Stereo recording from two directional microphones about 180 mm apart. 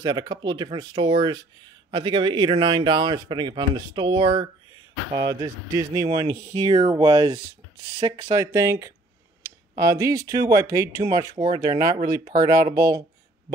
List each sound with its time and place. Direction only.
0.0 s speech: 25° right (ahead or behind)
8.4 s speech: 15° right (ahead or behind)